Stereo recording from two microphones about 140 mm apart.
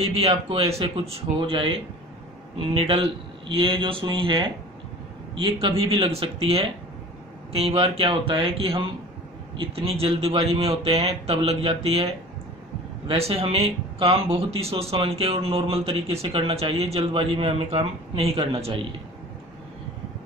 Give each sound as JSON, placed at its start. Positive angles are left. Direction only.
{"t": 0.0, "sound": "a man's voice", "side_deg": -45}
{"t": 13.1, "sound": "speech", "side_deg": -45}